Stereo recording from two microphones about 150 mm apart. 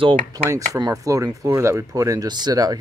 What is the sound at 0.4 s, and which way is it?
Speech, 20° right (ahead or behind).